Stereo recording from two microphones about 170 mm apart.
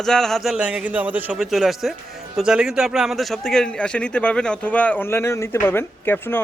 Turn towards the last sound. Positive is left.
turn(degrees=10)  # may be behind; listen again after turning